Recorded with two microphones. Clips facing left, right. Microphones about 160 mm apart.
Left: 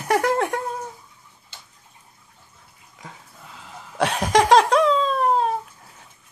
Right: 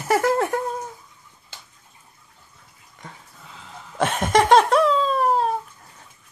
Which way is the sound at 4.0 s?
Centre (ahead or behind).